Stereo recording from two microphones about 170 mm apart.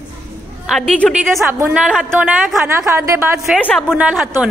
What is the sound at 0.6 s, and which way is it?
A woman's voice, centre (ahead or behind).